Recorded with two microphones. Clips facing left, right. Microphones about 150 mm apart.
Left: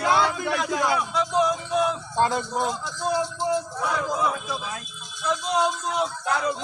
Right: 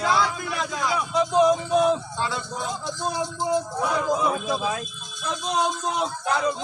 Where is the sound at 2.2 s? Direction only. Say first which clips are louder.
Left 6 dB; 55° left (ahead or behind).